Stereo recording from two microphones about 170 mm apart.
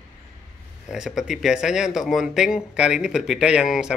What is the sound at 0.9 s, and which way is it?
Speech, 5° right (ahead or behind).